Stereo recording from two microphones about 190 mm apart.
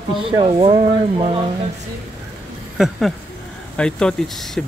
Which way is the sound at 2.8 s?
Centre (ahead or behind).